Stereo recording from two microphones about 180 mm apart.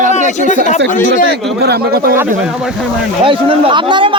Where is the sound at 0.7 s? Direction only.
45° left (ahead or behind).